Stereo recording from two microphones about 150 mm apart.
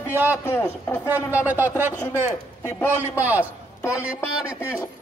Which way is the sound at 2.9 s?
10° right (ahead or behind).